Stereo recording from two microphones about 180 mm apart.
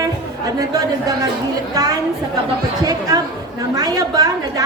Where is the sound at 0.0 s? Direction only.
20° right (ahead or behind).